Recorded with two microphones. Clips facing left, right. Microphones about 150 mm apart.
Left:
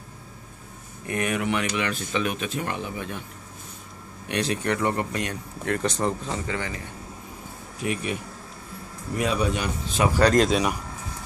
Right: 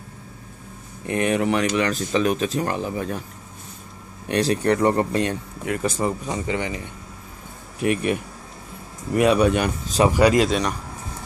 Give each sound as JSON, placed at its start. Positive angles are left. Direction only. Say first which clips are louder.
{"t": 1.0, "sound": "speech", "louder": "right 5 dB", "side_deg": -30}
{"t": 4.3, "sound": "speech", "louder": "right 6 dB", "side_deg": -35}
{"t": 5.7, "sound": "speech", "louder": "right 2 dB", "side_deg": -5}
{"t": 7.8, "sound": "a man's voice", "louder": "right 7 dB", "side_deg": -60}
{"t": 10.1, "sound": "speech", "louder": "left 1 dB", "side_deg": -5}